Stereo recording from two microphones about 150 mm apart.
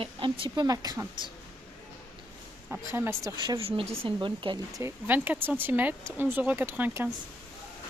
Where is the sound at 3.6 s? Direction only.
40° right (ahead or behind).